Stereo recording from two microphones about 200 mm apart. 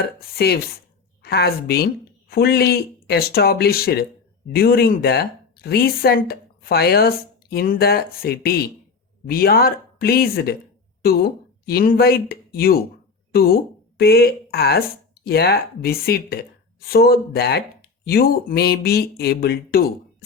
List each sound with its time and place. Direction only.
0.3 s speech: 50° left (ahead or behind)